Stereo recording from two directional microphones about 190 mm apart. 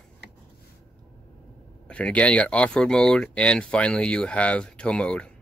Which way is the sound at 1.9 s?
5° left (ahead or behind).